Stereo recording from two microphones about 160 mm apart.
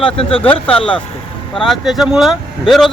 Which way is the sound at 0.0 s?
35° left (ahead or behind).